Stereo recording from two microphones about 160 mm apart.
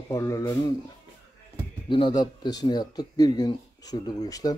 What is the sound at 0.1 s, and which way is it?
Speech, 20° left (ahead or behind).